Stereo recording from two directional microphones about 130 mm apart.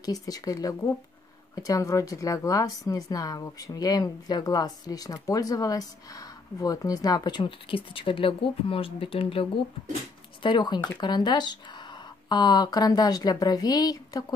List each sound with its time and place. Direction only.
0.0 s speech: 30° left (ahead or behind)